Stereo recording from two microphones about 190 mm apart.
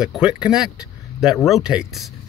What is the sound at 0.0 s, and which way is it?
Speech, 5° right (ahead or behind).